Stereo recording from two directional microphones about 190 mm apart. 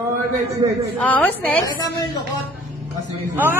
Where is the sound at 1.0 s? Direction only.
10° left (ahead or behind).